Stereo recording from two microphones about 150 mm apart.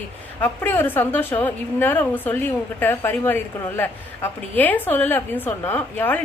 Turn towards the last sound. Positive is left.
turn(degrees=10)  # may be behind; listen again after turning